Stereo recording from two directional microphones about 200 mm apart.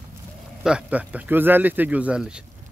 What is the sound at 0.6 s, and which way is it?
A man's voice, 5° right (ahead or behind).